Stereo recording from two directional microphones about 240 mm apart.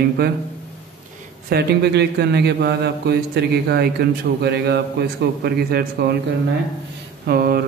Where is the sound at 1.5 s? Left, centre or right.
Right.